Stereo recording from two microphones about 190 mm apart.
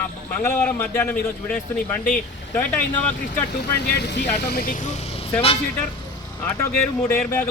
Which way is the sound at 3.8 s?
65° left (ahead or behind).